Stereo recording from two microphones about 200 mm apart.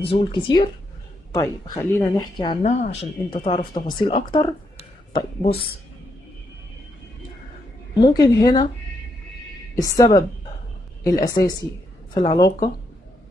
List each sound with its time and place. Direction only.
0.1 s speech: 25° left (ahead or behind)
2.6 s speech: 35° left (ahead or behind)
8.0 s speech: 20° left (ahead or behind)
9.8 s a woman's voice: 15° left (ahead or behind)